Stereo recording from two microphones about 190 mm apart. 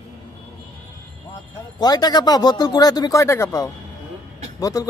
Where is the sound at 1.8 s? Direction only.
20° left (ahead or behind).